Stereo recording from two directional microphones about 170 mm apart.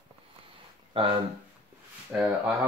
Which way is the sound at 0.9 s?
30° right (ahead or behind).